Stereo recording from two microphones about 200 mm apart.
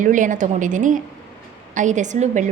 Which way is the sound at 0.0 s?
40° right (ahead or behind).